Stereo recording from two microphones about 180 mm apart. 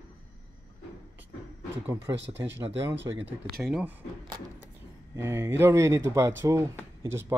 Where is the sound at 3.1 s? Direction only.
20° right (ahead or behind).